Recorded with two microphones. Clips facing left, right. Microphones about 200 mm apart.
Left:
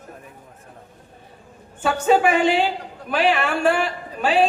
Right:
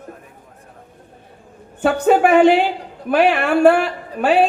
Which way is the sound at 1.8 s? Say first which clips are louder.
Right 4 dB; 60° right (ahead or behind).